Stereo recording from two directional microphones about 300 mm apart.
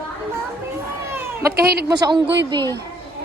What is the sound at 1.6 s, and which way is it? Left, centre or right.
Speech, right.